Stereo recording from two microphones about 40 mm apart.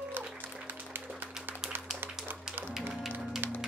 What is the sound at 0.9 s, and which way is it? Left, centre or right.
Music, right.